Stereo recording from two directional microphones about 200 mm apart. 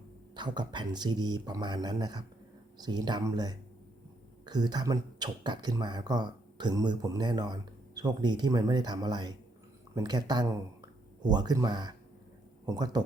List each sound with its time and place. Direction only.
0.3 s speech: 20° right (ahead or behind)